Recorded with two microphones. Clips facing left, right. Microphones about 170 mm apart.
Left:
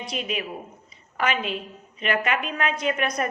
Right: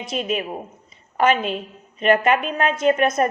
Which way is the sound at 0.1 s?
45° right (ahead or behind).